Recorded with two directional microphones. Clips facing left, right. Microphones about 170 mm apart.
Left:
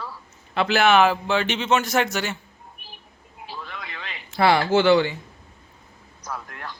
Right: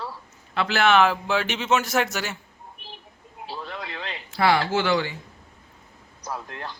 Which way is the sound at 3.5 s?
30° right (ahead or behind).